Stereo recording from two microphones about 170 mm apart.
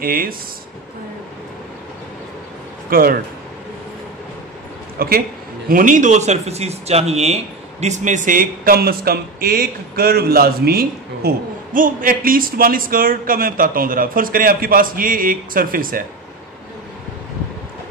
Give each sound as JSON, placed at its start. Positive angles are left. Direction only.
{"t": 0.0, "sound": "speech", "side_deg": -60}
{"t": 2.9, "sound": "speech", "side_deg": -60}
{"t": 4.9, "sound": "a woman's voice", "side_deg": -60}
{"t": 5.7, "sound": "speech", "side_deg": -50}